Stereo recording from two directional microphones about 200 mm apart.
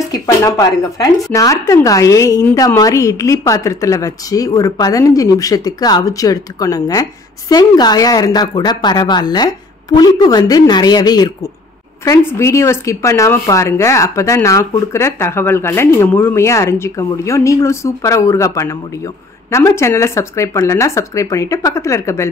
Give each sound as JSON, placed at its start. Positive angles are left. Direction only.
{"t": 0.1, "sound": "speech", "side_deg": 20}